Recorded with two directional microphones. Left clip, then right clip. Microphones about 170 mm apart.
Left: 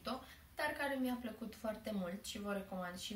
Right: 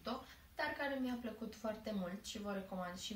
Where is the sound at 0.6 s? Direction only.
10° right (ahead or behind).